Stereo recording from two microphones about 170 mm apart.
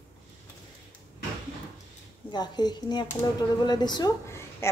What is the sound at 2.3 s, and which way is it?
A woman's voice, 25° left (ahead or behind).